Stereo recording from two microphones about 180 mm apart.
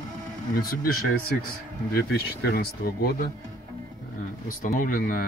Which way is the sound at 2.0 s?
60° left (ahead or behind).